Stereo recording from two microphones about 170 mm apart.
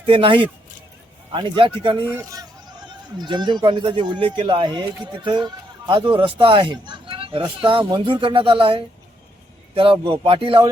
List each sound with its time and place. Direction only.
0.0 s a man's voice: 30° right (ahead or behind)